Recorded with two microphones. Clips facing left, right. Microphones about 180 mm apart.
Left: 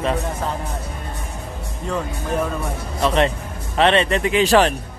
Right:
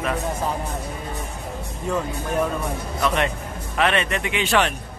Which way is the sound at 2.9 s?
30° left (ahead or behind).